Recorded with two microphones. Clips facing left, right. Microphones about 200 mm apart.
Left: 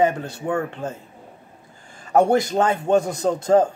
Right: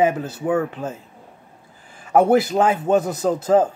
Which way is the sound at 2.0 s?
5° right (ahead or behind).